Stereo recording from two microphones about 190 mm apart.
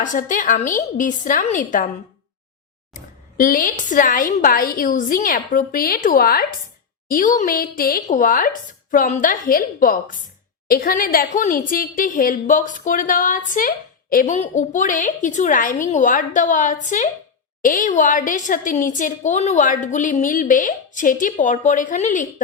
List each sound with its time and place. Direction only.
0.0 s a woman's voice: 45° left (ahead or behind)
2.9 s a woman's voice: 45° left (ahead or behind)